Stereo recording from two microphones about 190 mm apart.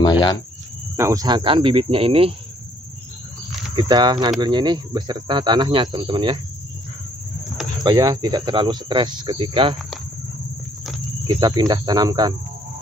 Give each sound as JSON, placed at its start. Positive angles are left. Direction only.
{"t": 0.0, "sound": "cricket", "side_deg": 20}
{"t": 0.9, "sound": "speech", "side_deg": -15}
{"t": 3.7, "sound": "speech", "side_deg": -25}
{"t": 7.8, "sound": "speech", "side_deg": -20}
{"t": 11.2, "sound": "speech", "side_deg": -20}